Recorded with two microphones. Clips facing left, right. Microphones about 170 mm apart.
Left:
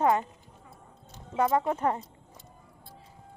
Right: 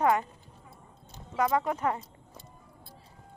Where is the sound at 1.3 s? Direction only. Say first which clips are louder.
Left 2 dB; 30° left (ahead or behind).